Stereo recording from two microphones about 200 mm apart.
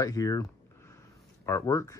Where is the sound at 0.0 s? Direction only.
15° left (ahead or behind).